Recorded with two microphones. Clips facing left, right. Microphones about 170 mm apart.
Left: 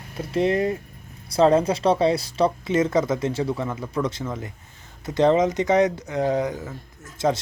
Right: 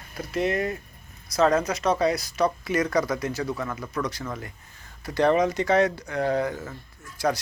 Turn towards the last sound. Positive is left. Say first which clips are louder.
# left 3 dB
turn(degrees=25)  # may be behind; listen again after turning